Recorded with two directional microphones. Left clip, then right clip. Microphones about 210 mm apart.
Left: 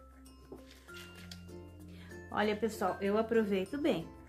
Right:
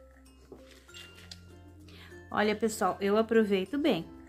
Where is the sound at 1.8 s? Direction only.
30° right (ahead or behind).